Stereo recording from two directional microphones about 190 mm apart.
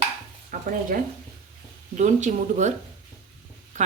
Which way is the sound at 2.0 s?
40° right (ahead or behind).